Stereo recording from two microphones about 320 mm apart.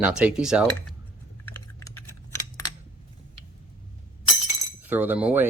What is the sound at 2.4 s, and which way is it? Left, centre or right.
Coin, left.